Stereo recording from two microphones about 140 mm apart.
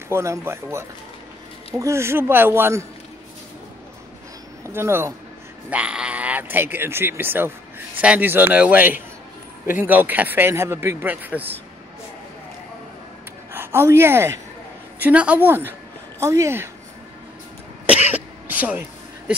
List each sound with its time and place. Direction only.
0.1 s speech: 20° right (ahead or behind)
4.6 s speech: 20° right (ahead or behind)
13.5 s a woman's voice: 15° right (ahead or behind)
17.8 s throat clearing: 10° right (ahead or behind)